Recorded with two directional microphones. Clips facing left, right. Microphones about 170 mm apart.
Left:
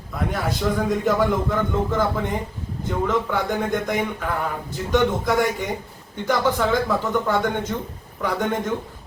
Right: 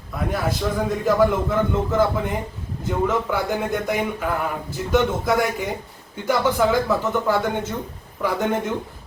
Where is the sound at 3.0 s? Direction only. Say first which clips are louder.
Even; 5° right (ahead or behind).